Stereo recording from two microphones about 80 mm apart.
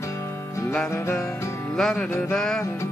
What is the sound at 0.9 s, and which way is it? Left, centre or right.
Music, left.